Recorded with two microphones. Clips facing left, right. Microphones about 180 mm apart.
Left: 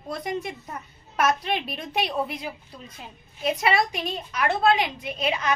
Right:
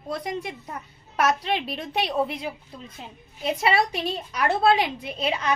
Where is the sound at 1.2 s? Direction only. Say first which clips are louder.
Right 1 dB; 30° right (ahead or behind).